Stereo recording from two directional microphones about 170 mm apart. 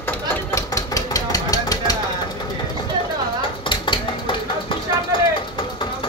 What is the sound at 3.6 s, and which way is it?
Dishes, 30° left (ahead or behind).